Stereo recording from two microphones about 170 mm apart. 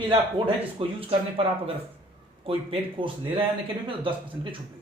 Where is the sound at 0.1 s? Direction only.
30° right (ahead or behind).